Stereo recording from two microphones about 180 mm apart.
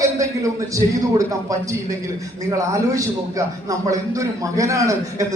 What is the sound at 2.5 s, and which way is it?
A man's voice, 20° right (ahead or behind).